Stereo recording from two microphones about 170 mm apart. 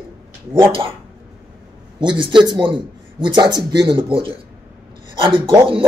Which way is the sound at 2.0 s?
30° right (ahead or behind).